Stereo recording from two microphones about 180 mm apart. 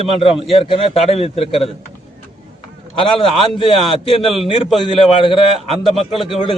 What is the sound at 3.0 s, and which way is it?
Speech, 30° left (ahead or behind).